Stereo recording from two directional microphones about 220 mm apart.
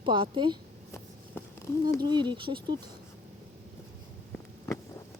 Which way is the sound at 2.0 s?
20° right (ahead or behind).